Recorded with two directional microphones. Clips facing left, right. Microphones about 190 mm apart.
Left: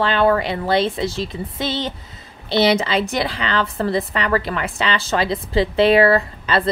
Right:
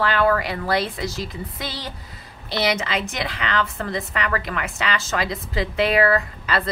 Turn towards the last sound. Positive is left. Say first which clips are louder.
# left 4 dB
turn(degrees=30)  # may be behind; listen again after turning